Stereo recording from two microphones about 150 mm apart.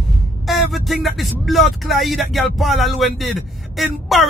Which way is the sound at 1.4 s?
Centre (ahead or behind).